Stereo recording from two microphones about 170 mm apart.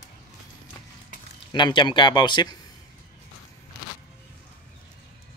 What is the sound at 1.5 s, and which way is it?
Speech, 25° left (ahead or behind).